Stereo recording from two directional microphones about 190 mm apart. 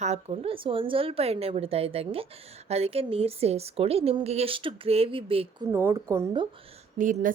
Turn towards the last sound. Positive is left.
turn(degrees=-45)  # may be behind; listen again after turning